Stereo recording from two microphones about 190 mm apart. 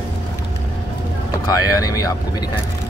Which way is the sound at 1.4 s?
20° left (ahead or behind).